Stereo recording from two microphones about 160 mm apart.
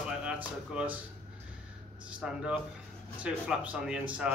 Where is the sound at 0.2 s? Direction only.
5° right (ahead or behind).